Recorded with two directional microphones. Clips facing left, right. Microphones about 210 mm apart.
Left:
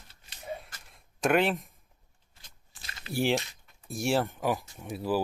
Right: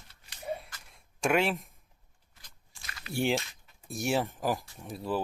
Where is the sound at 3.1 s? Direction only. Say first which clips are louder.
Left 2 dB; centre (ahead or behind).